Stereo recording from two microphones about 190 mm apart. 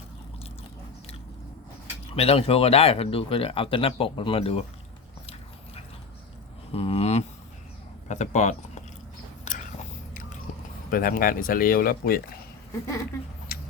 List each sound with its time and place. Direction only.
2.1 s speech: 30° left (ahead or behind)
6.7 s a sound: 30° left (ahead or behind)
8.0 s speech: 40° left (ahead or behind)
9.4 s whispering: 40° left (ahead or behind)
10.9 s speech: 50° left (ahead or behind)